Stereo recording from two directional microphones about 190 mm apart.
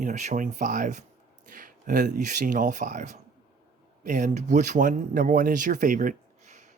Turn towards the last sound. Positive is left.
turn(degrees=-40)  # may be behind; listen again after turning